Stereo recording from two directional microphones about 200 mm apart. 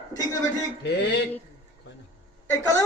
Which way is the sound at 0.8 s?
55° left (ahead or behind).